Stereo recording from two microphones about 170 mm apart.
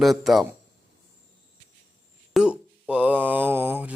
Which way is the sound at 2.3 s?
5° right (ahead or behind).